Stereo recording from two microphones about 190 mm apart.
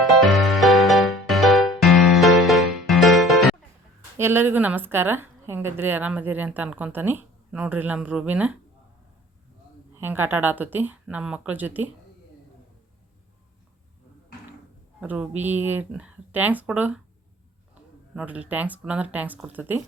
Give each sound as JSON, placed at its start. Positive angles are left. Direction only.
{"t": 0.1, "sound": "music", "side_deg": 0}
{"t": 4.2, "sound": "a woman's voice", "side_deg": -10}
{"t": 9.9, "sound": "a woman's voice", "side_deg": -10}
{"t": 15.0, "sound": "a woman's voice", "side_deg": -10}
{"t": 18.1, "sound": "a woman's voice", "side_deg": -5}